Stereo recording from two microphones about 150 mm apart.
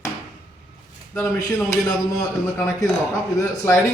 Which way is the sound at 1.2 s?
20° left (ahead or behind).